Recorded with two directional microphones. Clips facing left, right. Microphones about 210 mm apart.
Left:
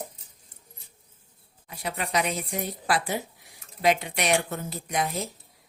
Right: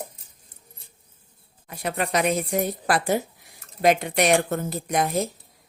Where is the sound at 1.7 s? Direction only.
50° right (ahead or behind).